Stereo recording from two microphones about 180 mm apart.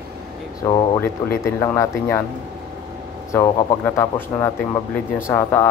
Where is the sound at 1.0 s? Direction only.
15° left (ahead or behind).